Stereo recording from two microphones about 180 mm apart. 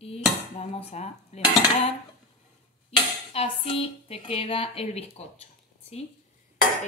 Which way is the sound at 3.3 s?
30° left (ahead or behind).